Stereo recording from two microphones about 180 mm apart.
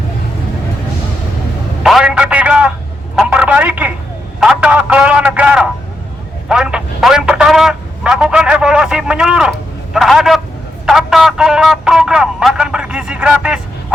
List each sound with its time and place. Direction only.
1.8 s speech: centre (ahead or behind)